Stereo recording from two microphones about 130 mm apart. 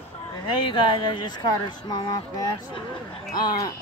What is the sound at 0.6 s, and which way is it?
Speech, 40° left (ahead or behind).